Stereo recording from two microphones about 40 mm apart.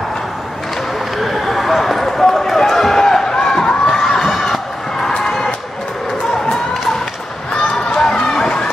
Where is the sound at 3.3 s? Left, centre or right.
Centre.